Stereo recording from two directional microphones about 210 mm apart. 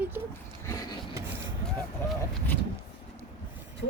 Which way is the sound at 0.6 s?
15° left (ahead or behind).